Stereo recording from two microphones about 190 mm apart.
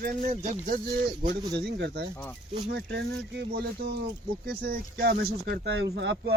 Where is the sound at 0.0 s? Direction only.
45° right (ahead or behind).